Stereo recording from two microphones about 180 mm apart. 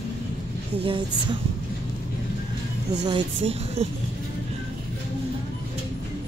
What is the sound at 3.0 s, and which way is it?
Speech, 25° right (ahead or behind).